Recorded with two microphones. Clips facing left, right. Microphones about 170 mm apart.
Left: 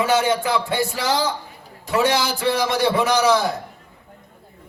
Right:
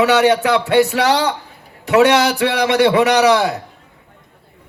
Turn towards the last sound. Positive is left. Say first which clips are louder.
# right 5 dB
turn(degrees=-70)  # may be behind; listen again after turning